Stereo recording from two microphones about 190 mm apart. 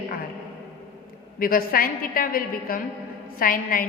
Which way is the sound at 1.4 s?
50° left (ahead or behind).